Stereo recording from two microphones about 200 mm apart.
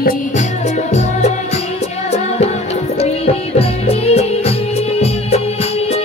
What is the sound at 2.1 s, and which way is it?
Music, 35° left (ahead or behind).